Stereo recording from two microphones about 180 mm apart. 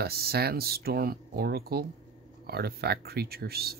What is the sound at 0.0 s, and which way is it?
Speech, 60° right (ahead or behind).